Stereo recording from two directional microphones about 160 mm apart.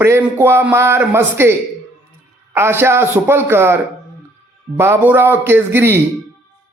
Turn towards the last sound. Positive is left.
turn(degrees=-15)  # may be behind; listen again after turning